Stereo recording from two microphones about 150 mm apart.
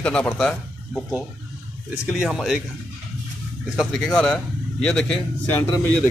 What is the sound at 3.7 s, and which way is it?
Speech, centre (ahead or behind).